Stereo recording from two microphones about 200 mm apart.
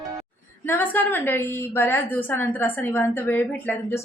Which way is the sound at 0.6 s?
10° left (ahead or behind).